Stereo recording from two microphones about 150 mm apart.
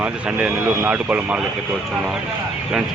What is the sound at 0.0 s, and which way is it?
Speech, 10° right (ahead or behind).